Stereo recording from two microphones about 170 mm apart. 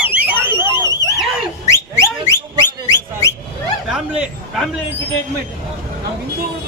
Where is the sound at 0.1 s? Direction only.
10° right (ahead or behind).